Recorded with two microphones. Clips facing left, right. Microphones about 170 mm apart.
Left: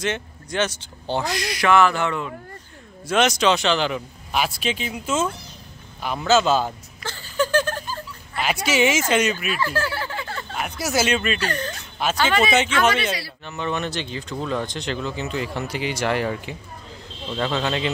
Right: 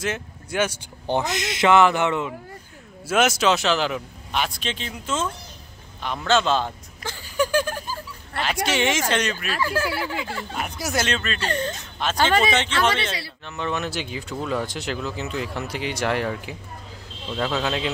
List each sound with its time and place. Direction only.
0.0 s speech: 5° right (ahead or behind)
3.1 s speech: 5° right (ahead or behind)
7.0 s a sound: 10° right (ahead or behind)
8.6 s speech: 5° left (ahead or behind)
9.6 s speech: 10° right (ahead or behind)
10.5 s speech: centre (ahead or behind)
11.3 s speech: 25° right (ahead or behind)
12.0 s speech: 10° left (ahead or behind)
12.6 s speech: 30° right (ahead or behind)
13.5 s speech: centre (ahead or behind)